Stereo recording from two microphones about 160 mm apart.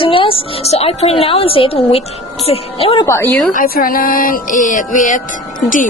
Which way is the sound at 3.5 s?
60° left (ahead or behind).